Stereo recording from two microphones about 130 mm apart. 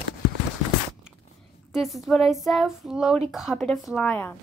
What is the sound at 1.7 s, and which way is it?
A woman's voice, centre (ahead or behind).